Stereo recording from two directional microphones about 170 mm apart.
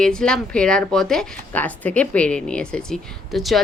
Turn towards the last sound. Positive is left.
turn(degrees=0)  # may be behind; listen again after turning